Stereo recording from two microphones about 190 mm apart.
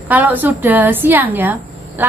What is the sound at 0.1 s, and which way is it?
Speech, 10° right (ahead or behind).